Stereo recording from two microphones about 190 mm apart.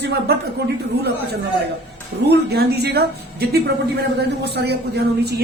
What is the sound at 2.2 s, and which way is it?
A woman's voice, 60° right (ahead or behind).